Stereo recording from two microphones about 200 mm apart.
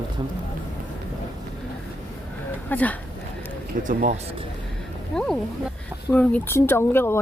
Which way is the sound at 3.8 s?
40° right (ahead or behind).